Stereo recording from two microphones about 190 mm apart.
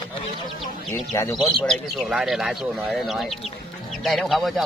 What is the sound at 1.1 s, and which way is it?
Speech, 15° left (ahead or behind).